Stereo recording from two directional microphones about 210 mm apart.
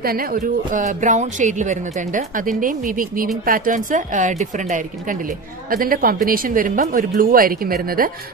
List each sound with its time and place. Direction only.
0.0 s speech: 45° right (ahead or behind)